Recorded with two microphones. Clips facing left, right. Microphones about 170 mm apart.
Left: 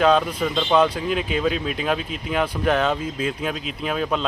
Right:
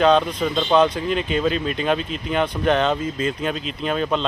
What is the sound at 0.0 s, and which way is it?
Speech, 5° left (ahead or behind).